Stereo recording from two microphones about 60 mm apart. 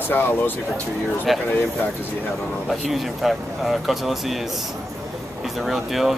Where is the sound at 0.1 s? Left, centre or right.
Left.